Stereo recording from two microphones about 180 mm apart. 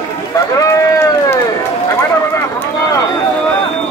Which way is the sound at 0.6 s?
15° left (ahead or behind).